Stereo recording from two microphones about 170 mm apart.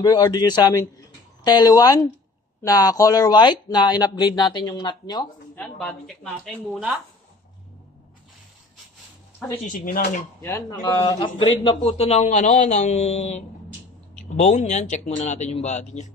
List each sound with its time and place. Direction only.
0.0 s speech: 25° left (ahead or behind)
5.6 s speech: 5° left (ahead or behind)
9.7 s speech: 55° left (ahead or behind)
10.4 s a man's voice: 15° left (ahead or behind); by 16.1 s 45° left (ahead or behind)